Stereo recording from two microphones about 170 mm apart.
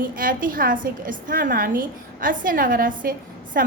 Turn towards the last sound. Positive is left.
turn(degrees=-55)  # may be behind; listen again after turning